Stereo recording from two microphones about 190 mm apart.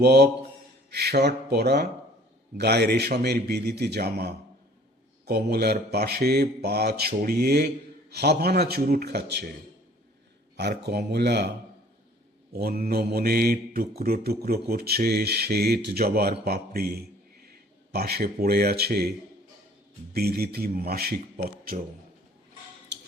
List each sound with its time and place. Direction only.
0.0 s speech: 60° right (ahead or behind)
10.6 s speech: 60° right (ahead or behind)
12.5 s speech: 55° right (ahead or behind)
20.1 s speech: 55° right (ahead or behind)